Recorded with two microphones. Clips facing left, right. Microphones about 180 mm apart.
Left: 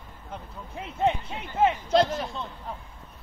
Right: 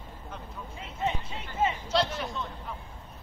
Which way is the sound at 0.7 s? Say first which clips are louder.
Left 7 dB; 60° left (ahead or behind).